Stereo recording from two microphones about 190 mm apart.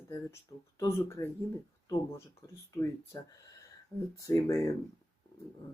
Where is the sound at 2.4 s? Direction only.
15° left (ahead or behind).